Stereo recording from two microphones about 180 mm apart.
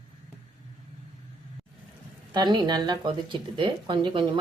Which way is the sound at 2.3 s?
25° right (ahead or behind).